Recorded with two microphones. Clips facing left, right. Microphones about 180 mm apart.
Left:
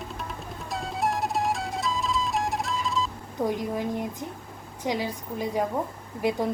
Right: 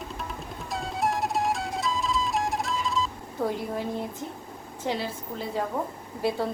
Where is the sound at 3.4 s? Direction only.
15° left (ahead or behind).